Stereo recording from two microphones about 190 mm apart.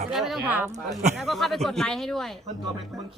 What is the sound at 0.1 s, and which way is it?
Speech, centre (ahead or behind).